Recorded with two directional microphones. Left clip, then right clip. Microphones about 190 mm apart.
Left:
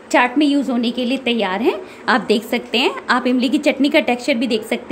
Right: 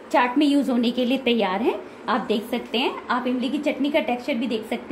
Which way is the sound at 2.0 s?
25° left (ahead or behind).